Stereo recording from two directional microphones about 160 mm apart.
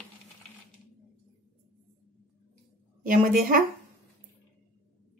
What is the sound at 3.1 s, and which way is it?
Speech, 60° right (ahead or behind).